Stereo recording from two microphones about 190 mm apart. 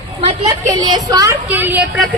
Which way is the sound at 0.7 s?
20° right (ahead or behind).